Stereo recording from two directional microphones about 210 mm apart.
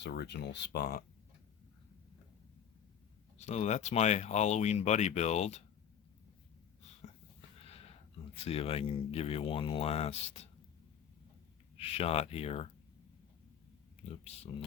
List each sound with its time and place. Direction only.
0.0 s speech: 55° left (ahead or behind)
3.3 s speech: 35° left (ahead or behind)
7.6 s a sound: 30° left (ahead or behind)
8.4 s speech: 30° left (ahead or behind)
11.8 s speech: 30° left (ahead or behind)
14.5 s speech: 25° left (ahead or behind)